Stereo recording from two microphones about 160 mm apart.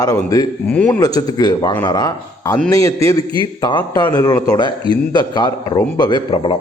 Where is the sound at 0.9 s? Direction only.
20° left (ahead or behind).